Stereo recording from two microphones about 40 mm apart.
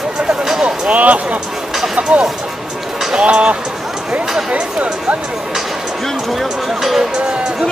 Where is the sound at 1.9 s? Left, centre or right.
Right.